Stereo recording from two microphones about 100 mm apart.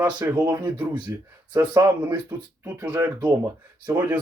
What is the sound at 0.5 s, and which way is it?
Speech, 45° right (ahead or behind).